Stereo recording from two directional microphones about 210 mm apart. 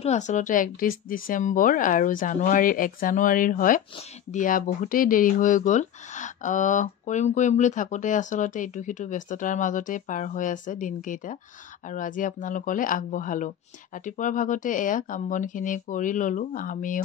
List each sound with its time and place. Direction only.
0.0 s speech: 35° left (ahead or behind)